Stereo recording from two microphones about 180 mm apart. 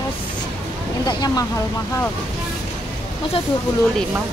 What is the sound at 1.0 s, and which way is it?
Speech, 20° left (ahead or behind).